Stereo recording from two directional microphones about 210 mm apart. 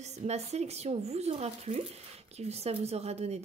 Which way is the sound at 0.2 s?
30° right (ahead or behind).